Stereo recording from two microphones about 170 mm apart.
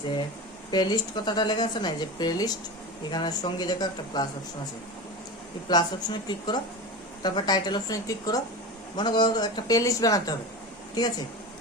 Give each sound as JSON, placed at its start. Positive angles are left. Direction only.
{"t": 0.7, "sound": "speech", "side_deg": 25}
{"t": 5.6, "sound": "speech", "side_deg": 25}